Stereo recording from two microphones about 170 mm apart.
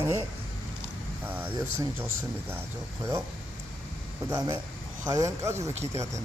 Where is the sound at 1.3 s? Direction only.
10° right (ahead or behind).